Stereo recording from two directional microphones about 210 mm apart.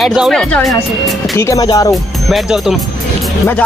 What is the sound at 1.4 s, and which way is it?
Speech, 15° left (ahead or behind).